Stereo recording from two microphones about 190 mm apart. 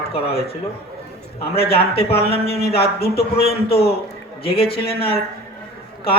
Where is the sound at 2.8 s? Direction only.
55° left (ahead or behind).